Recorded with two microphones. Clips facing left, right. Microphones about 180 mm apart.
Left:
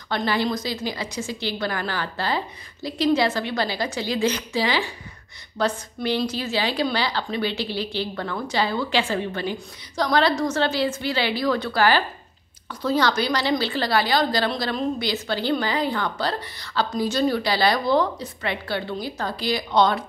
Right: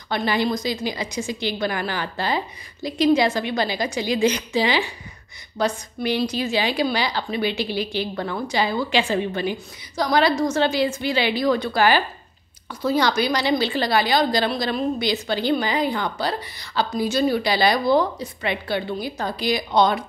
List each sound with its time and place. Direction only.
0.1 s a woman's voice: 15° right (ahead or behind)